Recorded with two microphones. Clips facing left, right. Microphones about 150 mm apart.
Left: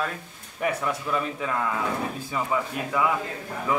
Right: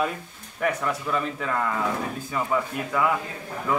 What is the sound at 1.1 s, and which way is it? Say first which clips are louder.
Speech: even; 5° left (ahead or behind).